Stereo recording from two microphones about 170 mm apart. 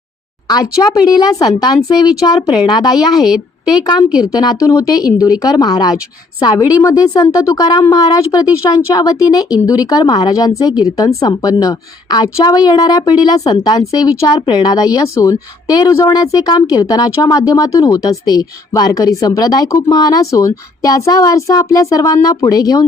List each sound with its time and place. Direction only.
0.4 s a woman's voice: 20° left (ahead or behind)
3.2 s a woman's voice: centre (ahead or behind)
4.2 s a woman's voice: 20° left (ahead or behind)